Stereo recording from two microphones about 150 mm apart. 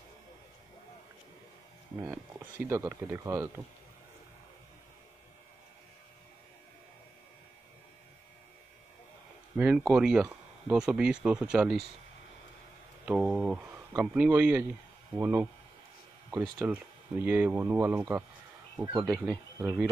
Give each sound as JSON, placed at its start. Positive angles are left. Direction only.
{"t": 2.6, "sound": "speech", "side_deg": -15}
{"t": 9.6, "sound": "speech", "side_deg": -5}
{"t": 13.0, "sound": "speech", "side_deg": -10}